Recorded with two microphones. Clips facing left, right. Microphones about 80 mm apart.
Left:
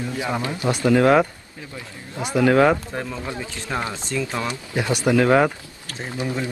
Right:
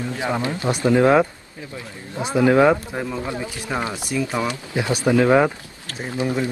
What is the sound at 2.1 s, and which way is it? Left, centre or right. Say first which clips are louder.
Speech: right 1 dB; right.